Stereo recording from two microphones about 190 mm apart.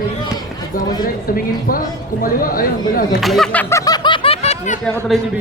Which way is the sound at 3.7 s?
20° left (ahead or behind).